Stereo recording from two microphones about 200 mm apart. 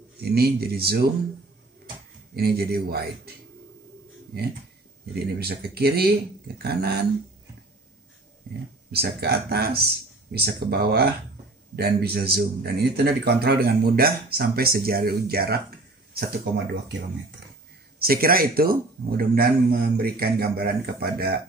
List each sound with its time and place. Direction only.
0.2 s speech: 50° right (ahead or behind)
2.3 s speech: 50° right (ahead or behind)
5.1 s speech: 50° right (ahead or behind)
8.9 s speech: 55° right (ahead or behind)
16.1 s a sound: 50° right (ahead or behind)
17.9 s speech: 50° right (ahead or behind)